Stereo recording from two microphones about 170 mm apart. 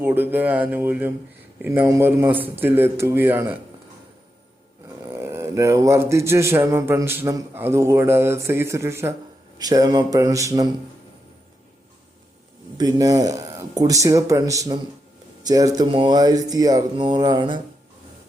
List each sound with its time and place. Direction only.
0.0 s speech: 10° right (ahead or behind)
5.0 s speech: 15° right (ahead or behind)
12.7 s speech: 20° right (ahead or behind)